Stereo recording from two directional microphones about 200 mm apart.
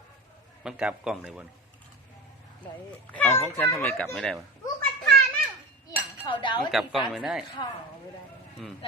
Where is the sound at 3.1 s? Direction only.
10° left (ahead or behind).